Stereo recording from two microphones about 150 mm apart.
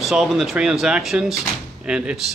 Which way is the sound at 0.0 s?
Centre (ahead or behind).